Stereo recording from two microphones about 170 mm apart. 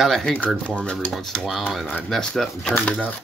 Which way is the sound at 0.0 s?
5° left (ahead or behind).